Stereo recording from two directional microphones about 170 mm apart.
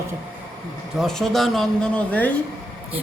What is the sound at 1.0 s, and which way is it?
Speech, centre (ahead or behind).